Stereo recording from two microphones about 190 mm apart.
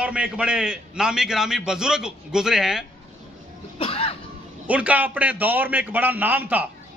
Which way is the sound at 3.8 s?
30° left (ahead or behind).